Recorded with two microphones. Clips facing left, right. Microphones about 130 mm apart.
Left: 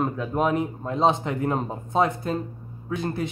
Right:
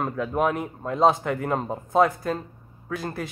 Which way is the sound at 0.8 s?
25° left (ahead or behind).